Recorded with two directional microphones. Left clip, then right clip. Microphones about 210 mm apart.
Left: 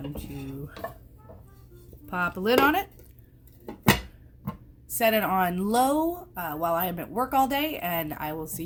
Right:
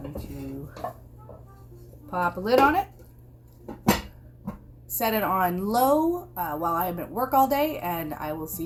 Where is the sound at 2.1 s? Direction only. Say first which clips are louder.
Right 1 dB; 60° left (ahead or behind).